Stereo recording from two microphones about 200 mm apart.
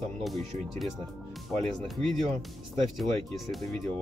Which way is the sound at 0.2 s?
Centre (ahead or behind).